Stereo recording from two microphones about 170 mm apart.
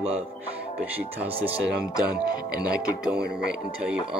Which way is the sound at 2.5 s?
60° right (ahead or behind).